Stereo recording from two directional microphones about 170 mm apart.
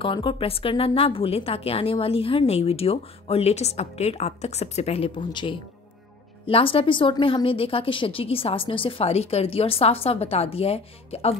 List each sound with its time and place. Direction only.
0.0 s speech: 30° left (ahead or behind)